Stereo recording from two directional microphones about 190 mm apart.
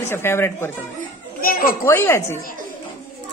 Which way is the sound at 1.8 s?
15° left (ahead or behind).